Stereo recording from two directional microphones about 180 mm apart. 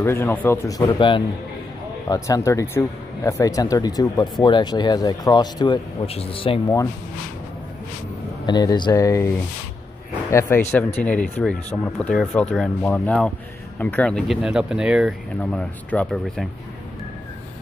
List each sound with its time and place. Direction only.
0.0 s speech: 15° left (ahead or behind)
0.8 s speech: 30° left (ahead or behind)
2.0 s speech: 20° left (ahead or behind)
8.5 s speech: 25° left (ahead or behind)
10.3 s speech: 10° left (ahead or behind)